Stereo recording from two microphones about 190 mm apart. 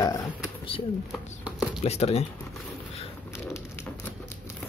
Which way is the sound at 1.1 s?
Centre (ahead or behind).